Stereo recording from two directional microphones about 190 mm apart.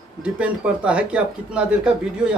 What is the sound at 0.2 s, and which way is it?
A man's voice, 5° right (ahead or behind).